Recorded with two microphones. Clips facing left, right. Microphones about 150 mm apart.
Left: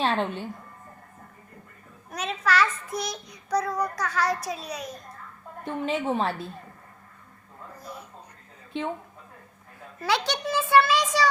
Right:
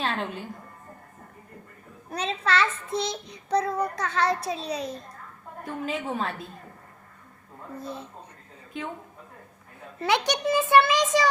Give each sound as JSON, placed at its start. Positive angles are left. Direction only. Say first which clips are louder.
{"t": 0.0, "sound": "a woman's voice", "louder": "left 4 dB", "side_deg": 30}
{"t": 2.0, "sound": "child singing", "louder": "even", "side_deg": -30}
{"t": 5.6, "sound": "a woman's voice", "louder": "left 4 dB", "side_deg": 25}
{"t": 7.8, "sound": "child singing", "louder": "right 6 dB", "side_deg": -25}
{"t": 10.0, "sound": "child singing", "louder": "right 2 dB", "side_deg": -20}